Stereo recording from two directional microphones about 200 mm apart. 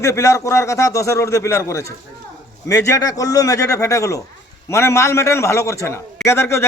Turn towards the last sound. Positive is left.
turn(degrees=15)  # may be behind; listen again after turning